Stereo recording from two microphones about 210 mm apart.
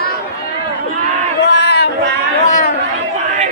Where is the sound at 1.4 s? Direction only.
50° left (ahead or behind).